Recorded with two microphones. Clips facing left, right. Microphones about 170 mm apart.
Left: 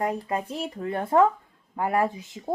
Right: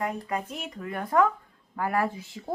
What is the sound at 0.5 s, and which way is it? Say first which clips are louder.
A child's voice: left 5 dB; 30° left (ahead or behind).